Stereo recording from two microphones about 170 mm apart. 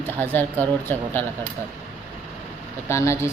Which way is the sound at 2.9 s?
15° left (ahead or behind).